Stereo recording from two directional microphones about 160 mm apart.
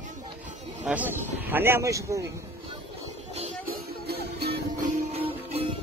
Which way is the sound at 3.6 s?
80° right.